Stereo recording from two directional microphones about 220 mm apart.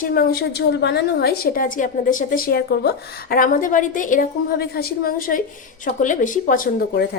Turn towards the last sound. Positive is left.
turn(degrees=40)  # may be behind; listen again after turning